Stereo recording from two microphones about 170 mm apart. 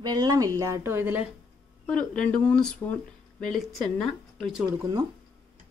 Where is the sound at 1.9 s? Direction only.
5° left (ahead or behind).